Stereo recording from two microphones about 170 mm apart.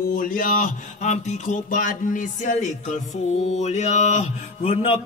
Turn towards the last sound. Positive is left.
turn(degrees=35)  # may be behind; listen again after turning